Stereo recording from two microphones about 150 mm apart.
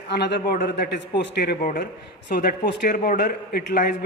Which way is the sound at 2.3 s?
90° left.